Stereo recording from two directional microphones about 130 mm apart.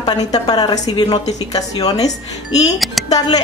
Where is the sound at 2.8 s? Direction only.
Centre (ahead or behind).